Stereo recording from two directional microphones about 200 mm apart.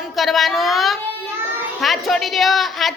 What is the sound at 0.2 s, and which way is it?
A woman's voice, centre (ahead or behind).